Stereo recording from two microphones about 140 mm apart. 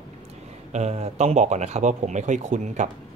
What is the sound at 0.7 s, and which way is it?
A man's voice, 50° right (ahead or behind).